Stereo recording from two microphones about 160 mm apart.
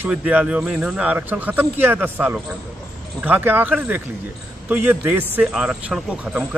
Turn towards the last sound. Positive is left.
turn(degrees=-10)  # may be behind; listen again after turning